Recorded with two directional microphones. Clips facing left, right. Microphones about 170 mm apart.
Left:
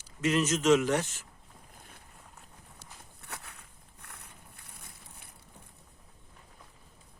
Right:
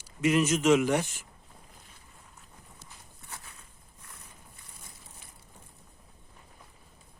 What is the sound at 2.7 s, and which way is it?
Walk, 65° left (ahead or behind).